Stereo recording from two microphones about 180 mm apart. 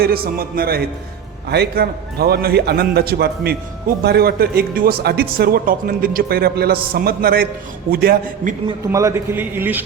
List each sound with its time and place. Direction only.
0.0 s speech: 55° right (ahead or behind)
8.9 s a man's voice: 15° right (ahead or behind)